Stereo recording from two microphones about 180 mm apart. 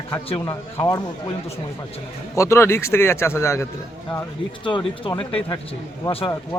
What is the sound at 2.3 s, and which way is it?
A man's voice, 15° left (ahead or behind).